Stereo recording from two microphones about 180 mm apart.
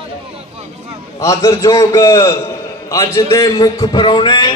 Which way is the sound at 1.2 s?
20° left (ahead or behind).